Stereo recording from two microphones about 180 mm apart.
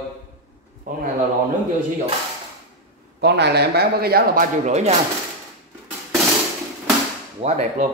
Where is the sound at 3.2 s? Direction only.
65° right (ahead or behind); by 4.9 s 40° right (ahead or behind).